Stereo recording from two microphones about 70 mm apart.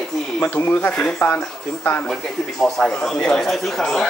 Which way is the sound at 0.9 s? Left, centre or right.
Centre.